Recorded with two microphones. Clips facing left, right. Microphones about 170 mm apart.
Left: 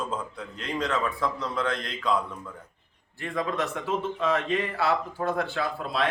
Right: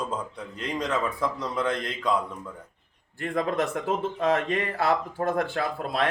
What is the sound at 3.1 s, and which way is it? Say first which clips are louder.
Speech: right 3 dB; 50° right (ahead or behind).